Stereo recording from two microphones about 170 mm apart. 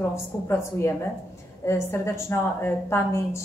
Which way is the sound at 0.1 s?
15° left (ahead or behind).